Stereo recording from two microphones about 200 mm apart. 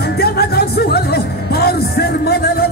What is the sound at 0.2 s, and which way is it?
Music, 50° left (ahead or behind).